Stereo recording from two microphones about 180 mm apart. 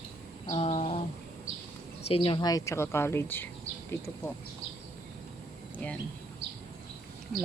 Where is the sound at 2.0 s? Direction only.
30° left (ahead or behind); by 3.5 s 10° left (ahead or behind).